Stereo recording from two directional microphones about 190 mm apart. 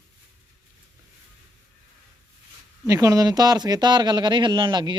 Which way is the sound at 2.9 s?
20° right (ahead or behind).